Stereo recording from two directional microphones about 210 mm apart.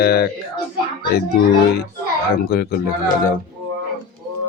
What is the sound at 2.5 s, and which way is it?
Speech, 50° left (ahead or behind).